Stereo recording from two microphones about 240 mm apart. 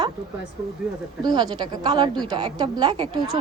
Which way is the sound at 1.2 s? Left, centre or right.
Centre.